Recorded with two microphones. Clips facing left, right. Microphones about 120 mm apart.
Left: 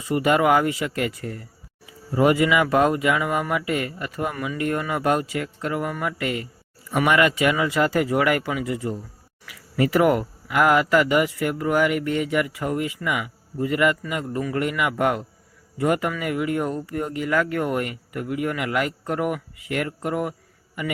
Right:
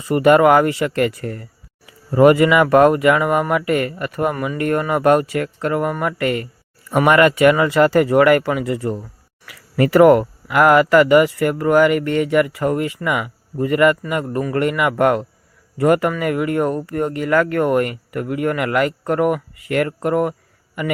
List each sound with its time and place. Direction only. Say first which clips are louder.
0.0 s speech: right 7 dB; 55° right (ahead or behind)